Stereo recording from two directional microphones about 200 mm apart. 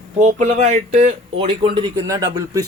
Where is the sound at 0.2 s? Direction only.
35° right (ahead or behind).